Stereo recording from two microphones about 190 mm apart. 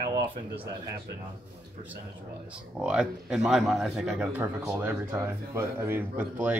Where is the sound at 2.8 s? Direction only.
5° right (ahead or behind).